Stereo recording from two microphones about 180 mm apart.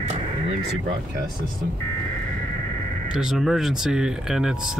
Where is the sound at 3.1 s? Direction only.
5° right (ahead or behind).